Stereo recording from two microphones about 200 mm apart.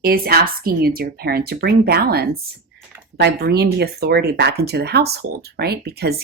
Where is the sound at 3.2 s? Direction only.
55° right (ahead or behind).